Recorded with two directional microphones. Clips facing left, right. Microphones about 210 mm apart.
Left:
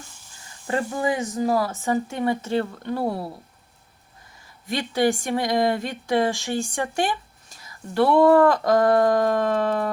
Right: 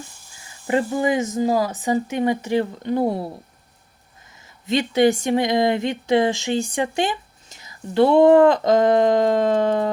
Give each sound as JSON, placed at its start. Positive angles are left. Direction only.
{"t": 0.7, "sound": "speech", "side_deg": -20}
{"t": 4.4, "sound": "speech", "side_deg": -20}